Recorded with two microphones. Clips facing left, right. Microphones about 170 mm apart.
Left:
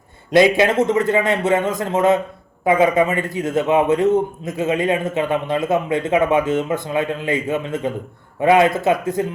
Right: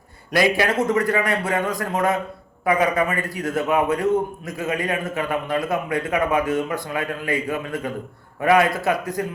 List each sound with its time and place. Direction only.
0.3 s a man's voice: 20° left (ahead or behind)